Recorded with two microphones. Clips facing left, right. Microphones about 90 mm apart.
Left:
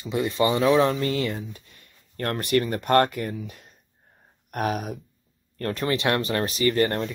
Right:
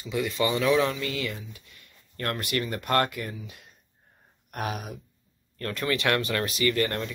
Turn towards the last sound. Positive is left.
turn(degrees=35)  # may be behind; listen again after turning